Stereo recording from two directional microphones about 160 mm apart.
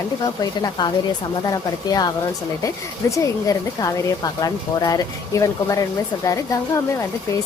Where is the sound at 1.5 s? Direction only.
25° left (ahead or behind).